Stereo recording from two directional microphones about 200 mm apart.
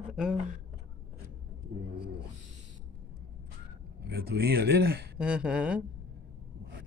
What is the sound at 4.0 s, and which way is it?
Speech, 55° right (ahead or behind).